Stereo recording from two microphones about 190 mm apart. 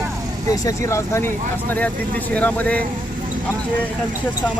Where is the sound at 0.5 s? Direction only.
15° left (ahead or behind).